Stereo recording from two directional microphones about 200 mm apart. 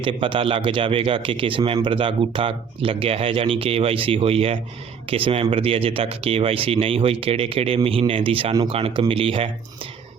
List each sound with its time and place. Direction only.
0.0 s speech: 25° right (ahead or behind)